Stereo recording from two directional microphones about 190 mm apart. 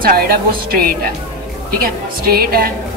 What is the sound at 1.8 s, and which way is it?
Speech, 50° right (ahead or behind).